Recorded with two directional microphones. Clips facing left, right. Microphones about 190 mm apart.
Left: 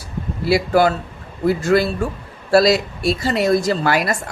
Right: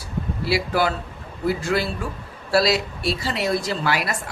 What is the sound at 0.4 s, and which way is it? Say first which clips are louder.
A woman's voice: left 7 dB; 50° left (ahead or behind).